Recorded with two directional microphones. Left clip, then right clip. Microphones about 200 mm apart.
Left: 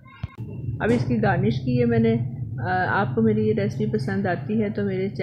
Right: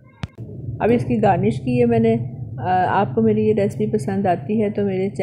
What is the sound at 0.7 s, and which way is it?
A woman's voice, 15° right (ahead or behind).